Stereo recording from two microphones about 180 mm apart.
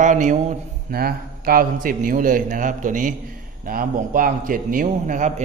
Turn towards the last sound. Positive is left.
turn(degrees=-45)  # may be behind; listen again after turning